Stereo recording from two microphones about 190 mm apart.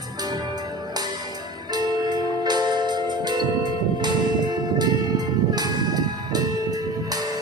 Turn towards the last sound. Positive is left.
turn(degrees=-20)  # may be behind; listen again after turning